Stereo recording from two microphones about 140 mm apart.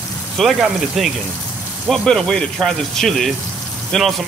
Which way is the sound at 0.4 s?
Centre (ahead or behind).